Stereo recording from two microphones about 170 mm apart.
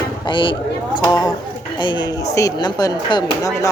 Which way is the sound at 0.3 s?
30° left (ahead or behind).